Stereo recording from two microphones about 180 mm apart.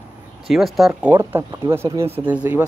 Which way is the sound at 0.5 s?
Centre (ahead or behind).